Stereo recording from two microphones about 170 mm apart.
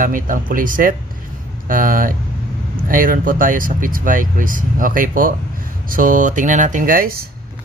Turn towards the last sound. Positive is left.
turn(degrees=-60)  # may be behind; listen again after turning